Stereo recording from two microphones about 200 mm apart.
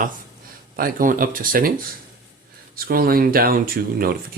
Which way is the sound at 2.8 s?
45° right (ahead or behind).